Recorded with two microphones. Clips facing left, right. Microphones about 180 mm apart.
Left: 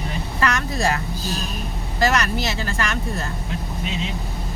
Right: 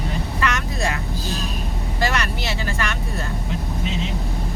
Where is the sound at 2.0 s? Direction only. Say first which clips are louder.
Left 4 dB; 40° left (ahead or behind).